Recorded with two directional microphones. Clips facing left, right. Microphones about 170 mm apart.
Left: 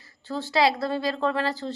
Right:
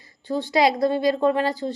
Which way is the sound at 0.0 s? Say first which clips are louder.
Right 5 dB; 15° right (ahead or behind).